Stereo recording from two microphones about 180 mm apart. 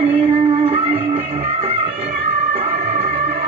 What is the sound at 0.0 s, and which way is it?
Music, 35° right (ahead or behind).